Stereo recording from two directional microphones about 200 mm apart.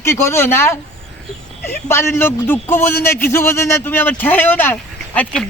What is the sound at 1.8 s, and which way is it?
Speech, 10° left (ahead or behind).